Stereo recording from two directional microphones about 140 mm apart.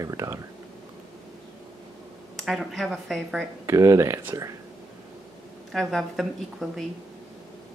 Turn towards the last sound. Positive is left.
turn(degrees=0)  # may be behind; listen again after turning